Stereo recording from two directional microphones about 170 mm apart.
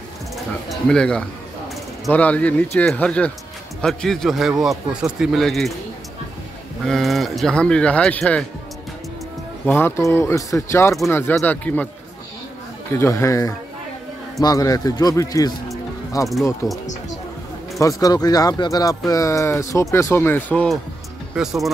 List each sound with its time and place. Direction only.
0.7 s a man's voice: 5° left (ahead or behind)
6.9 s a man's voice: centre (ahead or behind)
9.7 s speech: 15° left (ahead or behind)
12.9 s a man's voice: 15° left (ahead or behind); by 21.6 s 5° right (ahead or behind)